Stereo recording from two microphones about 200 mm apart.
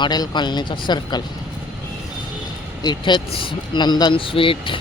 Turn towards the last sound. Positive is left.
turn(degrees=25)  # may be behind; listen again after turning